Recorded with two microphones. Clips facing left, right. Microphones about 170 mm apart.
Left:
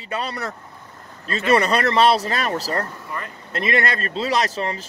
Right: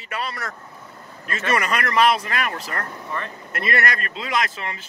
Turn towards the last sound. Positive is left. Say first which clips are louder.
# left 4 dB
turn(degrees=35)  # may be behind; listen again after turning